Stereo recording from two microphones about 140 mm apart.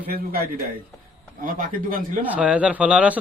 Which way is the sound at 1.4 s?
75° right (ahead or behind).